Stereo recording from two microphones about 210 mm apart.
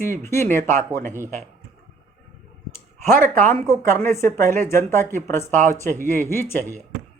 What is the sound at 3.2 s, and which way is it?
Speech, 35° right (ahead or behind).